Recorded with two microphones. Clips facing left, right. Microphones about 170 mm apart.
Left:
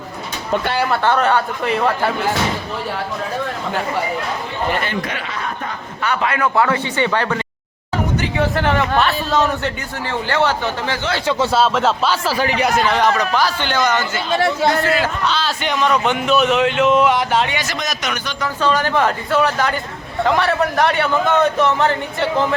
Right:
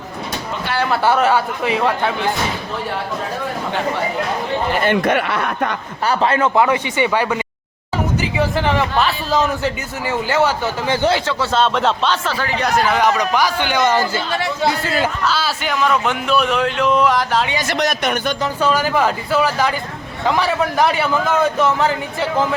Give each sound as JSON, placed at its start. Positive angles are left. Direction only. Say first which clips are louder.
{"t": 0.9, "sound": "a man's voice", "louder": "right 2 dB", "side_deg": -5}
{"t": 4.9, "sound": "speech", "louder": "right 8 dB", "side_deg": -60}
{"t": 6.0, "sound": "speech", "louder": "right 3 dB", "side_deg": -35}
{"t": 6.5, "sound": "a man's voice", "louder": "right 1 dB", "side_deg": -15}
{"t": 8.2, "sound": "a man's voice", "louder": "even", "side_deg": 0}
{"t": 13.8, "sound": "speech", "louder": "right 3 dB", "side_deg": -30}
{"t": 15.2, "sound": "a man's voice", "louder": "even", "side_deg": -5}
{"t": 17.7, "sound": "speech", "louder": "right 5 dB", "side_deg": -55}
{"t": 18.6, "sound": "a man's voice", "louder": "even", "side_deg": -5}